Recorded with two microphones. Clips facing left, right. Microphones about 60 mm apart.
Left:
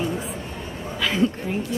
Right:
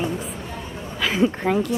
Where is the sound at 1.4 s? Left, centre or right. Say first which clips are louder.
Right 6 dB; right.